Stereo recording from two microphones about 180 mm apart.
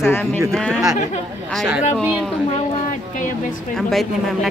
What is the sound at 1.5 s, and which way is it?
Speech, 5° right (ahead or behind).